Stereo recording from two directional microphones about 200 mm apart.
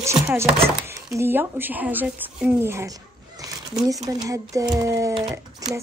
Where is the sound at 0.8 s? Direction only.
15° right (ahead or behind).